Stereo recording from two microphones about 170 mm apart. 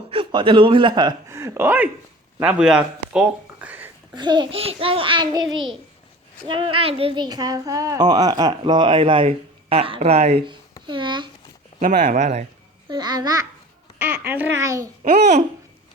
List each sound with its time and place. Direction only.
0.1 s a man's voice: 30° right (ahead or behind); by 3.9 s 10° right (ahead or behind)
4.1 s speech: 25° right (ahead or behind)
11.8 s speech: 45° right (ahead or behind)
12.9 s speech: 25° right (ahead or behind)
14.0 s speech: 10° right (ahead or behind)